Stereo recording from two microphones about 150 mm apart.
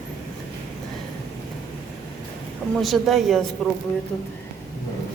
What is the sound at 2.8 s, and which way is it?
Speech, centre (ahead or behind).